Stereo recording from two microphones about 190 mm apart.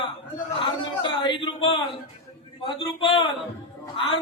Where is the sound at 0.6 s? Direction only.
25° left (ahead or behind).